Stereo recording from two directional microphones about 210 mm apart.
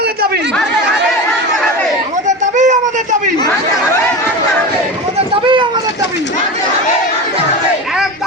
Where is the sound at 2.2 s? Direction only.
35° right (ahead or behind).